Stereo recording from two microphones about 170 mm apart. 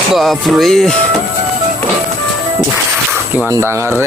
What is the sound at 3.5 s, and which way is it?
Speech, 15° right (ahead or behind).